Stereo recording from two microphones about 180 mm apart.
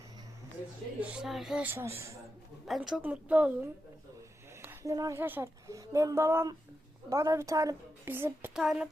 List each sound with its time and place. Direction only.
1.0 s speech: 5° right (ahead or behind)
2.6 s speech: centre (ahead or behind)
4.6 s speech: 15° right (ahead or behind)